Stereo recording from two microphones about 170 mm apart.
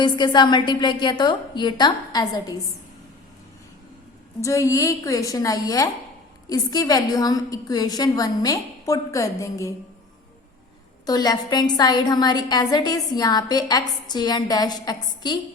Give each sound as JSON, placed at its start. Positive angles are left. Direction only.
{"t": 0.0, "sound": "a woman's voice", "side_deg": 25}
{"t": 4.4, "sound": "a woman's voice", "side_deg": 20}
{"t": 11.0, "sound": "a woman's voice", "side_deg": 25}